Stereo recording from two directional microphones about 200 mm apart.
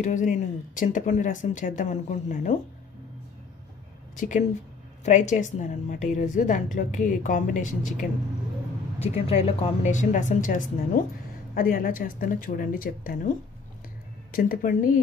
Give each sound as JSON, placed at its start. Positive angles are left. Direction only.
{"t": 0.0, "sound": "a woman's voice", "side_deg": 40}
{"t": 4.2, "sound": "a woman's voice", "side_deg": 40}
{"t": 14.3, "sound": "speech", "side_deg": 45}